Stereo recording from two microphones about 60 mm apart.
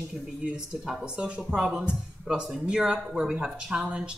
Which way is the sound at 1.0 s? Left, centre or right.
Centre.